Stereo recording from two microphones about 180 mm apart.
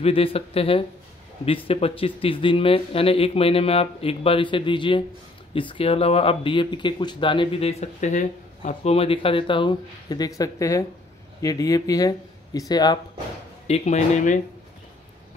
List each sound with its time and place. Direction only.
0.0 s speech: 30° left (ahead or behind)
13.7 s speech: 35° left (ahead or behind)